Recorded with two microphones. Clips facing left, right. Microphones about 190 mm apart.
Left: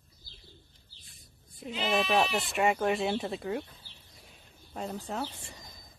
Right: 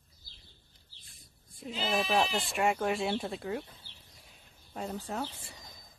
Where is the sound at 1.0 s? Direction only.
Centre (ahead or behind).